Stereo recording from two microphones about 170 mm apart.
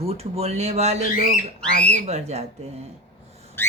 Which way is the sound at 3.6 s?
10° left (ahead or behind).